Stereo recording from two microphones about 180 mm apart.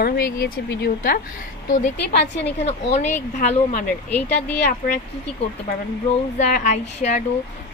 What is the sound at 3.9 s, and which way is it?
Speech, 10° left (ahead or behind).